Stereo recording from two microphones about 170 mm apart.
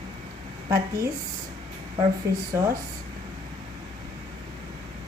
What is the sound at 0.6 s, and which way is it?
Speech, 15° right (ahead or behind).